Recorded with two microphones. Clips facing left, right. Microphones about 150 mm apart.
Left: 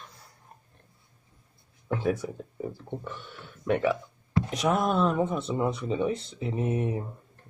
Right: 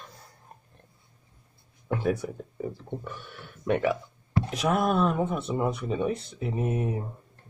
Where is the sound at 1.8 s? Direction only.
10° right (ahead or behind).